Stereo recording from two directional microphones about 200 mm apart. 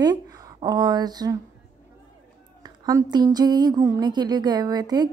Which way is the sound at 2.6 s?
20° right (ahead or behind).